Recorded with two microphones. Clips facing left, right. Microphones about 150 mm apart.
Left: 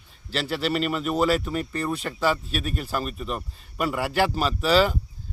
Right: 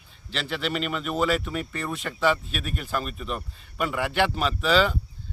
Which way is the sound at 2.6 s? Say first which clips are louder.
Left 3 dB; 35° left (ahead or behind).